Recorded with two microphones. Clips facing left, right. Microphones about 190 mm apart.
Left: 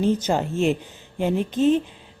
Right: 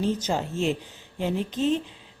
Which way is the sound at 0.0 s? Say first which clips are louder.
Left 5 dB; 55° left (ahead or behind).